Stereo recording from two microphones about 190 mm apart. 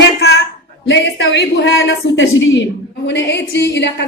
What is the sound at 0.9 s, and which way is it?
A woman's voice, 70° left (ahead or behind).